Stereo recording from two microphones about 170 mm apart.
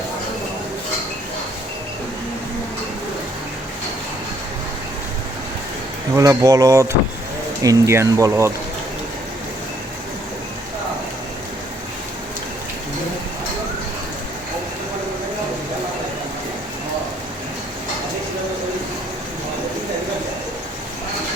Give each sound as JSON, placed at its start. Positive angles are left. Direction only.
{"t": 6.1, "sound": "speech", "side_deg": -20}